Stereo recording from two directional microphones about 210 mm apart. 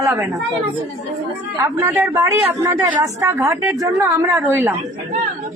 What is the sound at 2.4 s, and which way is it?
A woman's voice, 20° right (ahead or behind).